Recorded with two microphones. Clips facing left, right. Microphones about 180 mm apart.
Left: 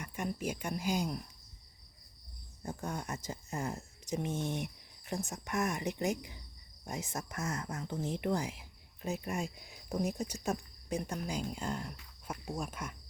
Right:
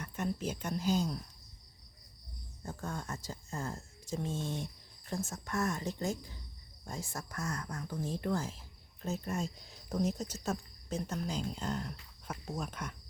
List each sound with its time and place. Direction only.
0.0 s speech: 10° left (ahead or behind)
2.6 s speech: 15° left (ahead or behind)